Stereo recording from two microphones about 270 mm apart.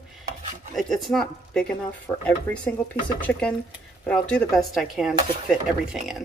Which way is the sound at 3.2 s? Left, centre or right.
Centre.